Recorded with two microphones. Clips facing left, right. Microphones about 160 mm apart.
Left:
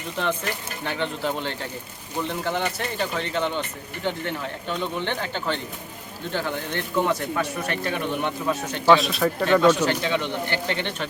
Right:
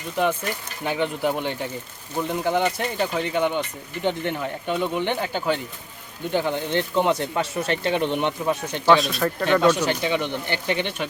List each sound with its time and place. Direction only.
0.9 s speech: 15° right (ahead or behind)
8.9 s speech: centre (ahead or behind)
9.5 s speech: 15° right (ahead or behind)